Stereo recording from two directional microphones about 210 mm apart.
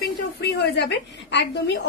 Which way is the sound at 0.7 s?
55° left (ahead or behind).